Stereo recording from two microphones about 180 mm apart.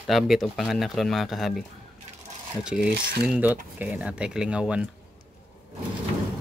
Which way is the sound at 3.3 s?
10° right (ahead or behind).